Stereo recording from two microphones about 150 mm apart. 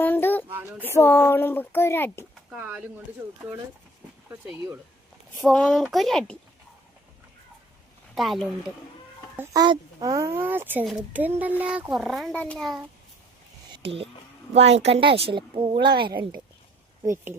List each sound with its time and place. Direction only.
0.0 s child singing: 15° left (ahead or behind)
0.8 s speech: 15° left (ahead or behind)
2.5 s a child's voice: 5° right (ahead or behind)
4.3 s a child's voice: 10° right (ahead or behind)
5.4 s speech: 5° left (ahead or behind)
8.1 s speech: centre (ahead or behind)
9.3 s speech: 15° right (ahead or behind)
9.6 s a child's voice: 25° right (ahead or behind); by 12.8 s centre (ahead or behind)
13.8 s a woman's voice: 40° right (ahead or behind)